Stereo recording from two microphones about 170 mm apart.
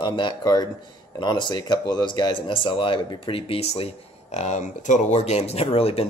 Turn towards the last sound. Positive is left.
turn(degrees=35)  # may be behind; listen again after turning